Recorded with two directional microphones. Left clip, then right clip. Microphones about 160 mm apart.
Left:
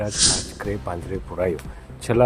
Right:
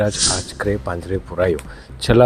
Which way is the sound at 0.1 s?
Centre (ahead or behind).